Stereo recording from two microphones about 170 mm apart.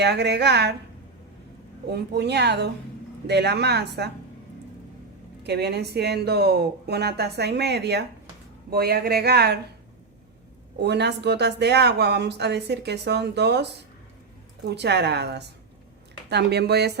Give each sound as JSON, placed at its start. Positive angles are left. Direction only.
{"t": 0.0, "sound": "a woman's voice", "side_deg": -80}
{"t": 1.9, "sound": "a woman's voice", "side_deg": -80}
{"t": 5.4, "sound": "speech", "side_deg": -75}
{"t": 8.7, "sound": "speech", "side_deg": -65}
{"t": 10.8, "sound": "a woman's voice", "side_deg": -85}